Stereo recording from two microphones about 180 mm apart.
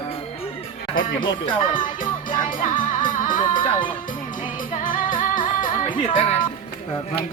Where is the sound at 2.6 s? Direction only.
45° left (ahead or behind).